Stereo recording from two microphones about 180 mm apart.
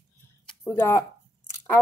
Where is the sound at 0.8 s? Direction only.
15° left (ahead or behind).